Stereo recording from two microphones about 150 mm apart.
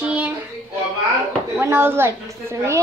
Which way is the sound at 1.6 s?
15° right (ahead or behind).